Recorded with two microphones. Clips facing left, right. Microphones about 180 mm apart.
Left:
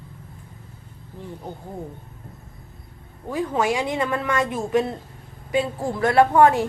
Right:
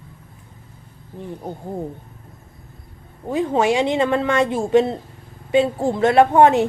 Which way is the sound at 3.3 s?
25° right (ahead or behind).